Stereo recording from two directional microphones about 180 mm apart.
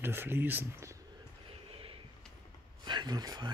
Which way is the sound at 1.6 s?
30° right (ahead or behind).